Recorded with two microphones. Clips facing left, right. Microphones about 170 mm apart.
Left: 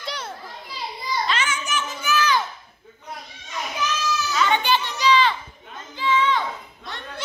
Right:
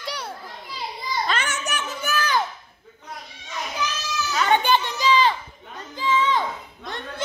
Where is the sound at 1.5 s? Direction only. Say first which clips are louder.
Left 1 dB; 65° right (ahead or behind); by 2.4 s 50° right (ahead or behind).